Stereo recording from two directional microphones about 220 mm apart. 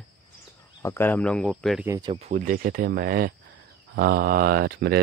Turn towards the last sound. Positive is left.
turn(degrees=-45)  # may be behind; listen again after turning